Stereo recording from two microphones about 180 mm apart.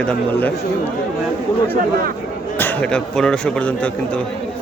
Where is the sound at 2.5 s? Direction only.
10° left (ahead or behind).